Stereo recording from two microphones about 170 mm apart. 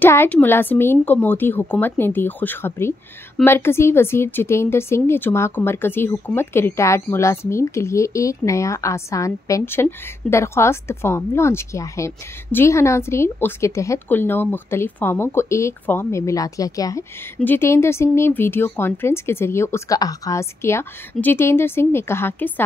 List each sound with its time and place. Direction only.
0.0 s speech: 15° left (ahead or behind)